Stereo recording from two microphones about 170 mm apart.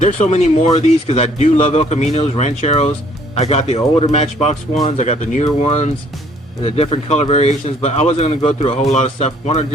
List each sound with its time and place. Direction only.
0.0 s a man's voice: 40° left (ahead or behind)